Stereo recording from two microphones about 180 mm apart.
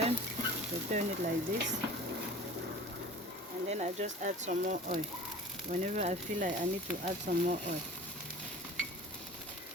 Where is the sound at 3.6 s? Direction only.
40° right (ahead or behind).